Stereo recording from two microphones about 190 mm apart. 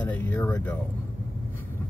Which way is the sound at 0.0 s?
10° left (ahead or behind).